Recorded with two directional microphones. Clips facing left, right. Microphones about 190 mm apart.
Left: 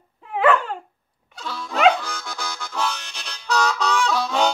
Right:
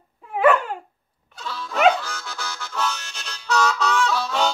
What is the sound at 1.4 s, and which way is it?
Music, 15° left (ahead or behind).